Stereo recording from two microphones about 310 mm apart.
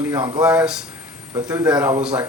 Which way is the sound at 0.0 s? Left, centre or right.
Centre.